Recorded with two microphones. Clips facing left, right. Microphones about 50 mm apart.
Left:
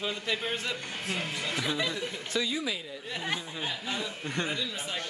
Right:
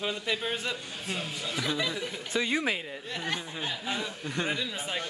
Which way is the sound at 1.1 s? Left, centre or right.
Left.